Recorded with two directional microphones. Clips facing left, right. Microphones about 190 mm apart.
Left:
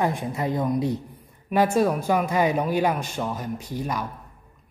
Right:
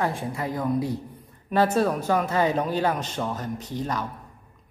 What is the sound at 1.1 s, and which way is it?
A woman's voice, 10° left (ahead or behind).